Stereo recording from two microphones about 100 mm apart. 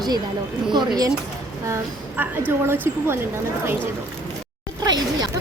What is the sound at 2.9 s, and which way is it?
Speech, 25° right (ahead or behind).